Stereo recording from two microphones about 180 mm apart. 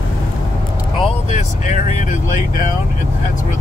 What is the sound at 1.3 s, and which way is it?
Speech, 45° left (ahead or behind).